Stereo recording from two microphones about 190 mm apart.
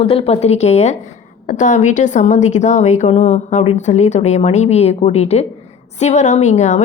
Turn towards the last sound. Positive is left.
turn(degrees=40)  # may be behind; listen again after turning